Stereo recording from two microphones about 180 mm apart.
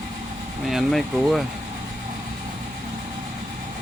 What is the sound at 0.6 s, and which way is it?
Speech, centre (ahead or behind).